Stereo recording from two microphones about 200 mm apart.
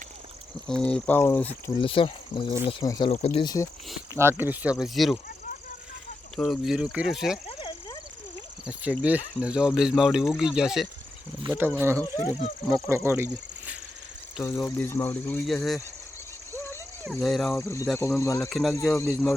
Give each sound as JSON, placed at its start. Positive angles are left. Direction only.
{"t": 0.7, "sound": "speech", "side_deg": 5}
{"t": 1.8, "sound": "speech", "side_deg": 25}
{"t": 4.1, "sound": "speech", "side_deg": -10}
{"t": 6.3, "sound": "speech", "side_deg": 0}
{"t": 7.4, "sound": "snake", "side_deg": 25}
{"t": 8.6, "sound": "speech", "side_deg": -5}
{"t": 13.1, "sound": "speech", "side_deg": -10}
{"t": 14.4, "sound": "speech", "side_deg": 10}
{"t": 16.5, "sound": "a sound", "side_deg": 10}
{"t": 17.1, "sound": "speech", "side_deg": 0}
{"t": 17.5, "sound": "speech", "side_deg": 10}
{"t": 18.4, "sound": "speech", "side_deg": 0}
{"t": 18.7, "sound": "speech", "side_deg": 15}